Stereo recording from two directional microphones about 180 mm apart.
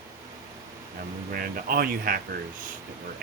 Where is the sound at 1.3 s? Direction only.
55° right (ahead or behind).